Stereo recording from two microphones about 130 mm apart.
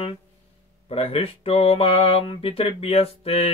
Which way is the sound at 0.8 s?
45° left (ahead or behind).